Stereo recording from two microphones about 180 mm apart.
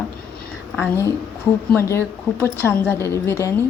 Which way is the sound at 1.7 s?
15° left (ahead or behind).